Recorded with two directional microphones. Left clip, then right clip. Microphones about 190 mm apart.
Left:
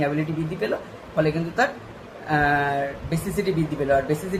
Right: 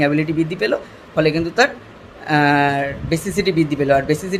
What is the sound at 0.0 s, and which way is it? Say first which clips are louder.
Speech: right 7 dB; 45° right (ahead or behind).